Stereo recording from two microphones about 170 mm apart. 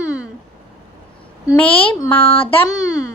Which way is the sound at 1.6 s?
30° left (ahead or behind).